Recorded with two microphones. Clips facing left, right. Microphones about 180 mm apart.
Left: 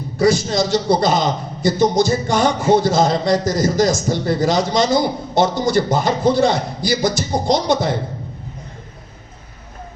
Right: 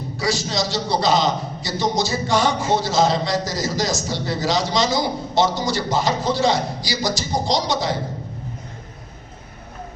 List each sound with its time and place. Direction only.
0.2 s a man's voice: 55° left (ahead or behind)